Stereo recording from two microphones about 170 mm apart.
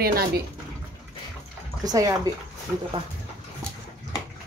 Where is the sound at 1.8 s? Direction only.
20° right (ahead or behind).